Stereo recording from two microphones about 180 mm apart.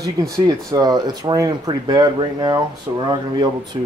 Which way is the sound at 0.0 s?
20° right (ahead or behind).